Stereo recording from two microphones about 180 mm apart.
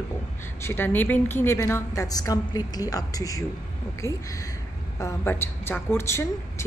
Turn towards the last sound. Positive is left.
turn(degrees=15)  # may be behind; listen again after turning